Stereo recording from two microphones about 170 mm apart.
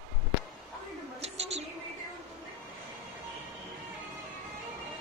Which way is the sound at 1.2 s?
40° right (ahead or behind).